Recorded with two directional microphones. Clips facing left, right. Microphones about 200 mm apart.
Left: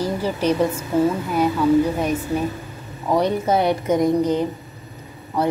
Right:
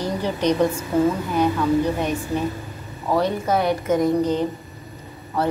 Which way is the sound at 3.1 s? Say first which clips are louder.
Left 2 dB; 20° left (ahead or behind).